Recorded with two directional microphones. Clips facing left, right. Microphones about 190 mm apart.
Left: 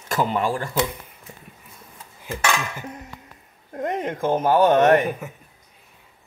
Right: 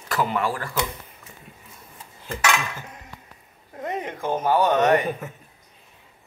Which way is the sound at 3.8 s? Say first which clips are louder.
Left 4 dB; 50° left (ahead or behind).